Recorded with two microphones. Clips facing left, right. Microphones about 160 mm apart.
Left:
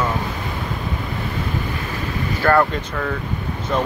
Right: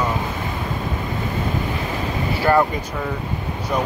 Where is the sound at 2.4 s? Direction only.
15° right (ahead or behind).